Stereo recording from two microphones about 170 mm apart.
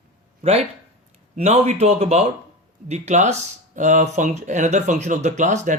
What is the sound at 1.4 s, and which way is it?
Speech, 40° right (ahead or behind).